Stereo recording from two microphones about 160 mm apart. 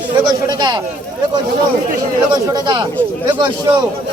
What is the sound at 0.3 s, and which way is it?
Speech, 25° right (ahead or behind).